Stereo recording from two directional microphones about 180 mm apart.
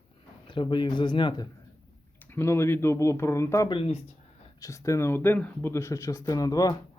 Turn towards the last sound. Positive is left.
turn(degrees=20)  # may be behind; listen again after turning